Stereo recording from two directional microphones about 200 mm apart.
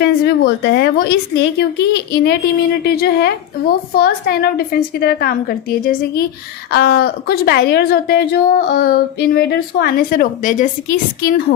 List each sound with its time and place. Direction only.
0.0 s a woman's voice: 55° left (ahead or behind)